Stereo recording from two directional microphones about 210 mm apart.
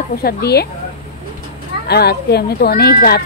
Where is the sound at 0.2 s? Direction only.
50° left (ahead or behind).